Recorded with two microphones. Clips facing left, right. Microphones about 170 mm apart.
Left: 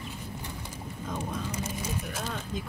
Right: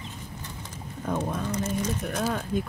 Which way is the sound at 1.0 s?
60° right (ahead or behind).